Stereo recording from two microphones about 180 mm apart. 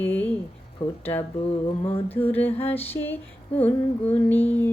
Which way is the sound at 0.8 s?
35° left (ahead or behind).